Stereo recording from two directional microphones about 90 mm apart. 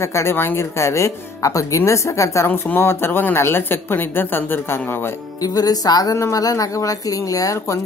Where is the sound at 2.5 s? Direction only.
20° left (ahead or behind).